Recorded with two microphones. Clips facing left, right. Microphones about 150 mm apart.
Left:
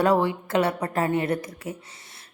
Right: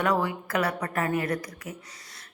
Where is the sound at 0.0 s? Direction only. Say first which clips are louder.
Left 5 dB; 30° left (ahead or behind).